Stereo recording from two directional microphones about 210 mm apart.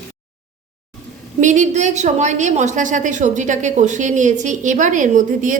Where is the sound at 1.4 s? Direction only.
35° right (ahead or behind).